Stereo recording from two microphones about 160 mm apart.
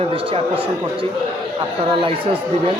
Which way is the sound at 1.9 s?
35° right (ahead or behind).